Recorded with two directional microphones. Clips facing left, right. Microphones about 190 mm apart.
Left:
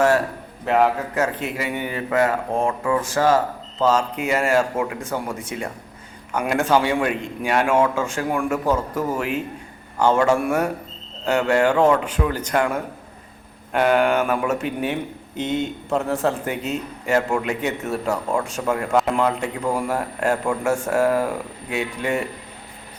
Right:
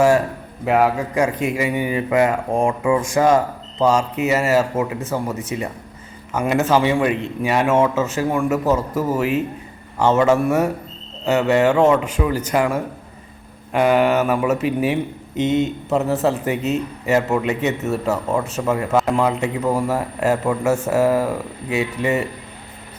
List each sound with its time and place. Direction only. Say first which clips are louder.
0.6 s a man's voice: right 2 dB; 10° right (ahead or behind)